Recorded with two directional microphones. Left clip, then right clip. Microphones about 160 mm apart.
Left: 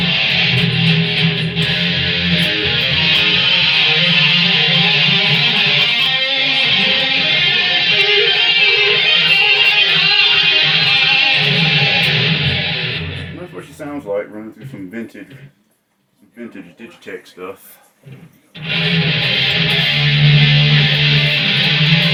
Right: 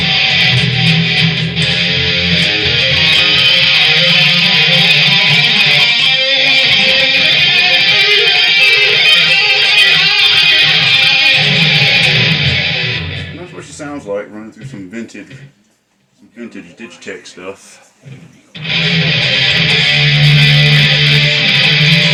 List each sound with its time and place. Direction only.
0.0 s music: 25° right (ahead or behind)
18.5 s music: 25° right (ahead or behind)